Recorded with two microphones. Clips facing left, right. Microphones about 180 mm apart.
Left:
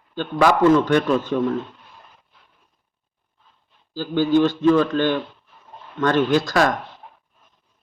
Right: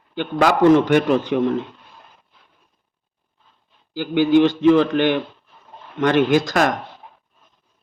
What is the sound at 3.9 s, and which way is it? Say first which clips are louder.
Speech: right 3 dB; 15° right (ahead or behind).